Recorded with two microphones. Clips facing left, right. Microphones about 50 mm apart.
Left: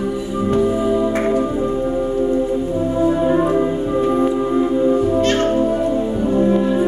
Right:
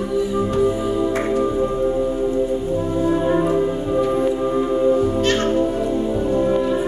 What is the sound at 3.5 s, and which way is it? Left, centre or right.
Music, centre.